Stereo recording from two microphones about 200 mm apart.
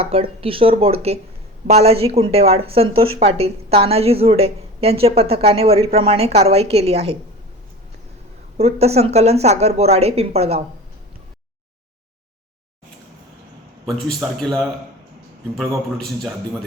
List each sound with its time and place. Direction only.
0.0 s a woman's voice: 30° right (ahead or behind)
8.5 s speech: 30° right (ahead or behind)
13.8 s speech: centre (ahead or behind)